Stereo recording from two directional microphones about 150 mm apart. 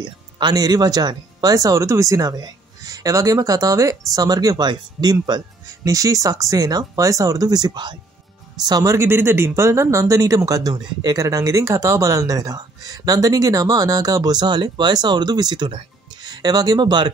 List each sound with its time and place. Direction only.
0.0 s speech: 30° right (ahead or behind)